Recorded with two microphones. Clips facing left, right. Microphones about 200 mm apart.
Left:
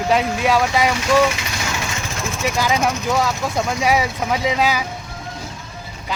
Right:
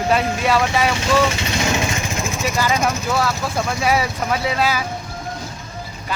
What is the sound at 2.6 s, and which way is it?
Speech, 10° left (ahead or behind).